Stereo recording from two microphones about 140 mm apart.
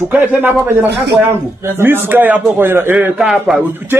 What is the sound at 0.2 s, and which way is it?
A man's voice, 10° right (ahead or behind).